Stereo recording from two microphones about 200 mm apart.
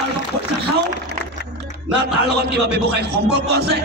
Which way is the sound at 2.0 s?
55° right (ahead or behind).